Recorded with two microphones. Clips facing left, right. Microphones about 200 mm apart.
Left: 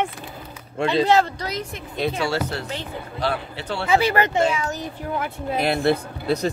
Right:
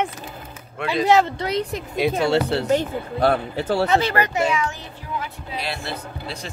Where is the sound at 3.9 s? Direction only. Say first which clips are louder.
Left 1 dB; 15° left (ahead or behind).